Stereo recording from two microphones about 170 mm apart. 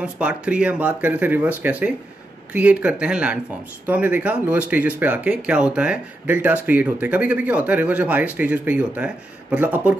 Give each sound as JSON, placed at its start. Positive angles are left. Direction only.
{"t": 0.0, "sound": "speech", "side_deg": -5}